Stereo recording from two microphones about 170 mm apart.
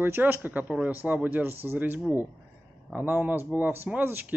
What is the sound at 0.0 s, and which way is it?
Speech, 10° right (ahead or behind).